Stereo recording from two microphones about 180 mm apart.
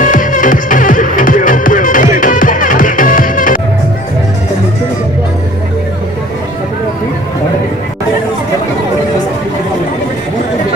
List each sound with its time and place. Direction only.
0.0 s music: 50° left (ahead or behind)